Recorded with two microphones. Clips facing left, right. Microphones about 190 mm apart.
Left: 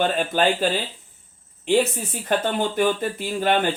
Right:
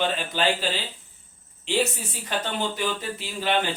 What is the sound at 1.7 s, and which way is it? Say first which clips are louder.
Speech: left 5 dB; 50° left (ahead or behind).